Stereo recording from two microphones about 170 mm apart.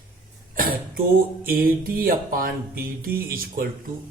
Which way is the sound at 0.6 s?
60° right (ahead or behind).